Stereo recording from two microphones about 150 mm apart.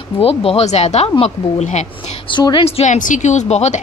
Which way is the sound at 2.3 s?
30° left (ahead or behind).